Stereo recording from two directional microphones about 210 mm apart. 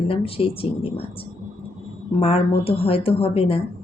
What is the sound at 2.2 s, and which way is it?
Speech, 25° left (ahead or behind).